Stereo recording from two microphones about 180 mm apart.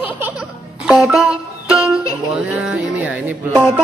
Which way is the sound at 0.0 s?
5° right (ahead or behind).